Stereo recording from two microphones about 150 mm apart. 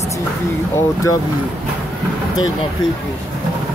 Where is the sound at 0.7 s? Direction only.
20° left (ahead or behind).